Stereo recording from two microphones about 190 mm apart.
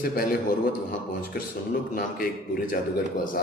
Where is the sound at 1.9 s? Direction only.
50° left (ahead or behind).